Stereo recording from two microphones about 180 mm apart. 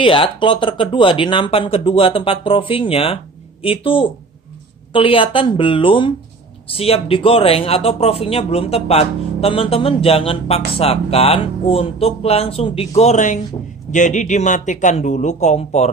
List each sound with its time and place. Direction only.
0.0 s a man's voice: 30° left (ahead or behind)